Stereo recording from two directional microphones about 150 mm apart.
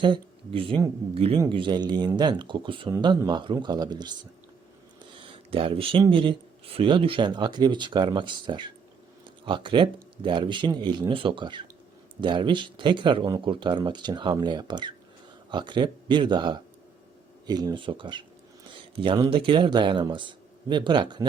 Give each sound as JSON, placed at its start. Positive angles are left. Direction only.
{"t": 0.0, "sound": "speech", "side_deg": -35}
{"t": 5.2, "sound": "speech", "side_deg": -35}